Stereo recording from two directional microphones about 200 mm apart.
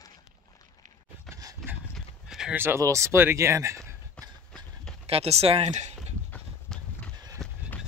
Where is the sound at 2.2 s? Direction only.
5° right (ahead or behind).